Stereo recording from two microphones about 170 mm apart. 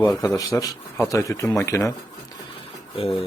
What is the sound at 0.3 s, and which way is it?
Speech, 20° left (ahead or behind).